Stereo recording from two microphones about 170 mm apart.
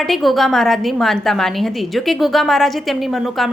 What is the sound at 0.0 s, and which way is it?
A woman's voice, centre (ahead or behind).